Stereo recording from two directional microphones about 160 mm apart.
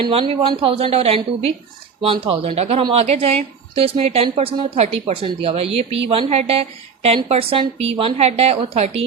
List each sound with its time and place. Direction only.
0.0 s a woman's voice: 35° right (ahead or behind)